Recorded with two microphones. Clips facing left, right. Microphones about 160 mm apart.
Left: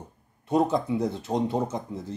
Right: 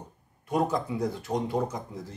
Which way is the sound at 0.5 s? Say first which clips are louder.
Left 4 dB; 25° left (ahead or behind).